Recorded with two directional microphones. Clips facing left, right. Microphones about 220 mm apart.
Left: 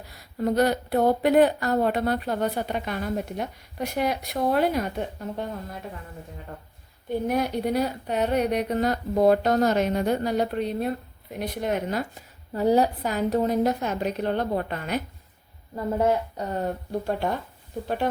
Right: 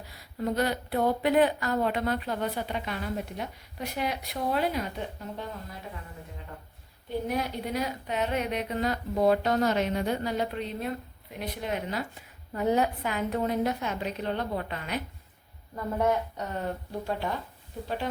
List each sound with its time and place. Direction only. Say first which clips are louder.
0.4 s speech: left 6 dB; 40° left (ahead or behind)
7.3 s speech: left 8 dB; 50° left (ahead or behind)
7.7 s a woman's voice: left 6 dB; 35° left (ahead or behind)
15.7 s a woman's voice: left 4 dB; 30° left (ahead or behind)
17.1 s speech: left 4 dB; 50° left (ahead or behind)